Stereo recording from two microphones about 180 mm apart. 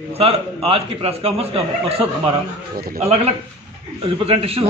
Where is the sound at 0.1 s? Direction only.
35° right (ahead or behind).